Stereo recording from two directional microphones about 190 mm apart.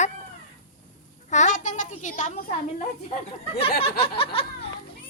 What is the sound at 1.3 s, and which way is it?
A child's voice, 40° left (ahead or behind).